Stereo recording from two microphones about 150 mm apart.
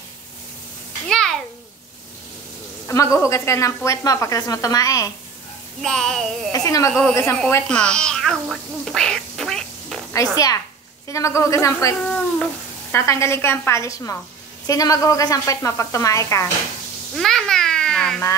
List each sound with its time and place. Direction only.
1.0 s a sound: 5° left (ahead or behind)
2.9 s speech: 20° left (ahead or behind)
5.8 s speech: 5° left (ahead or behind)
6.5 s speech: 20° left (ahead or behind)
6.9 s speech: 5° left (ahead or behind)
7.6 s quack: 5° left (ahead or behind)
10.3 s speech: 25° left (ahead or behind)
12.0 s a sound: centre (ahead or behind)
12.9 s speech: 20° left (ahead or behind)
17.1 s speech: centre (ahead or behind)